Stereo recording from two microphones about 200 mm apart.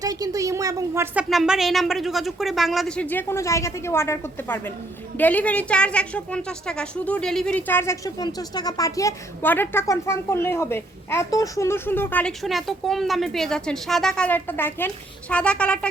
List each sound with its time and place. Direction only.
0.0 s a woman's voice: 20° right (ahead or behind)
1.1 s a woman's voice: centre (ahead or behind)